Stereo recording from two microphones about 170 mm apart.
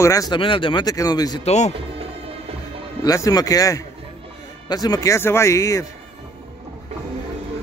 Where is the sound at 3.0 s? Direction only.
20° left (ahead or behind).